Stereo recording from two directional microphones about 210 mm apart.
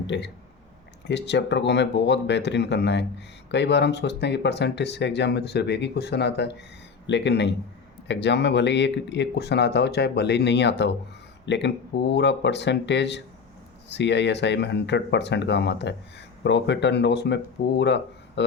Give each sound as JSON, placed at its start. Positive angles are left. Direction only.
{"t": 0.1, "sound": "speech", "side_deg": 55}